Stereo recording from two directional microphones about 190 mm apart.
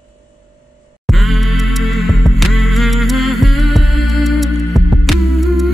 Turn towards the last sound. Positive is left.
turn(degrees=0)  # may be behind; listen again after turning